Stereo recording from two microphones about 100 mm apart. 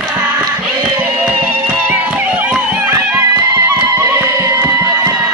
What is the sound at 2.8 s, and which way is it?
Music, 25° right (ahead or behind).